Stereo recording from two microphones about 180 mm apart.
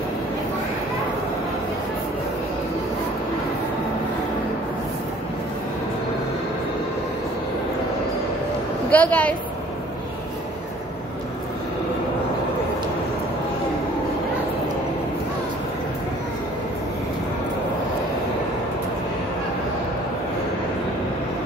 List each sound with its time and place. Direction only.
8.9 s a woman's voice: 10° left (ahead or behind)